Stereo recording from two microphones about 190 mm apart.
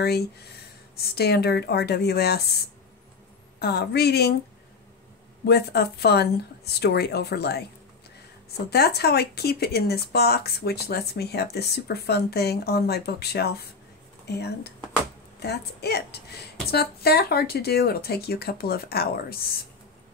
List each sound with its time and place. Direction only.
0.9 s speech: 55° left (ahead or behind)
3.5 s speech: 60° left (ahead or behind)
5.4 s speech: 60° left (ahead or behind)
8.6 s speech: 60° left (ahead or behind)